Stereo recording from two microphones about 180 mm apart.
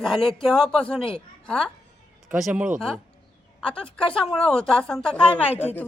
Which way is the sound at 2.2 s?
5° right (ahead or behind).